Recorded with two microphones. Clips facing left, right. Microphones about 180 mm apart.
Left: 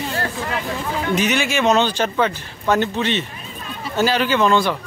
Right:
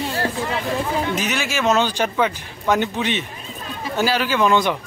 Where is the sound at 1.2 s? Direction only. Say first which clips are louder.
Left 4 dB; centre (ahead or behind).